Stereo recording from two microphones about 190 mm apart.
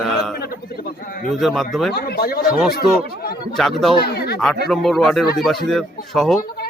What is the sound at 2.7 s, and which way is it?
Speech, 55° left (ahead or behind).